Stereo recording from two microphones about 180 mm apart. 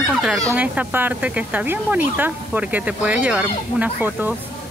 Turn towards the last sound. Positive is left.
turn(degrees=-5)  # may be behind; listen again after turning